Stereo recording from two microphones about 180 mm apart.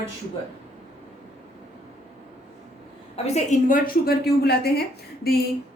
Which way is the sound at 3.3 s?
50° left (ahead or behind).